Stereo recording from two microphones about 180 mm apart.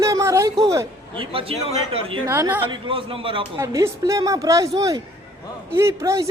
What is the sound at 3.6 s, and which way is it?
Speech, 15° right (ahead or behind).